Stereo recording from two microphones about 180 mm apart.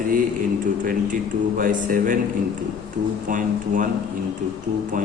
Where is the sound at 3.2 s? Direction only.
45° right (ahead or behind).